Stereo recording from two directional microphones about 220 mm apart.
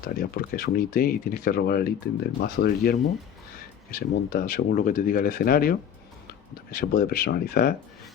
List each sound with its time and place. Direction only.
0.2 s speech: 45° left (ahead or behind)